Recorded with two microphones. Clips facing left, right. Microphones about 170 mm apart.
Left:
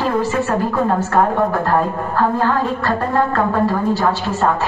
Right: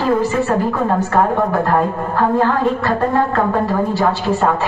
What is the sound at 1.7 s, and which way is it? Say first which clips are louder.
A woman's voice: right 1 dB; 20° right (ahead or behind).